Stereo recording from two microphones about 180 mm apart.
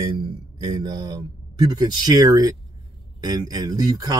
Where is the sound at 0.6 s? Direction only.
20° right (ahead or behind).